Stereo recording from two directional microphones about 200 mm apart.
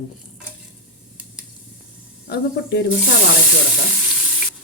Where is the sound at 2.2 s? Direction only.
55° left (ahead or behind).